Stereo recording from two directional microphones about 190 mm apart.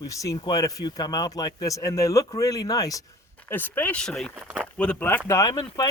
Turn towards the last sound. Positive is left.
turn(degrees=20)  # may be behind; listen again after turning